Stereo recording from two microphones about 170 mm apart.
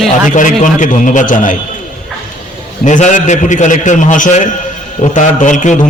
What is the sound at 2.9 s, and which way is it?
A man's voice, 45° left (ahead or behind).